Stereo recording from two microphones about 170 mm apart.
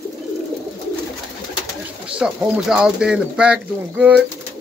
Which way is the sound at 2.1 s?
5° right (ahead or behind).